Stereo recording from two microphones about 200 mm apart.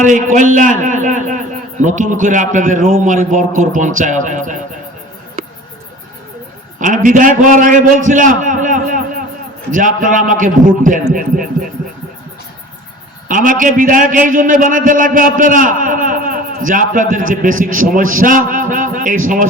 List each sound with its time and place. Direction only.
0.0 s a man's voice: 40° right (ahead or behind)
6.7 s a man's voice: 40° right (ahead or behind)
13.2 s a man's voice: 40° right (ahead or behind)